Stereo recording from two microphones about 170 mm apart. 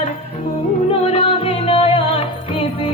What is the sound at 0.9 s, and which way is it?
Music, 35° left (ahead or behind).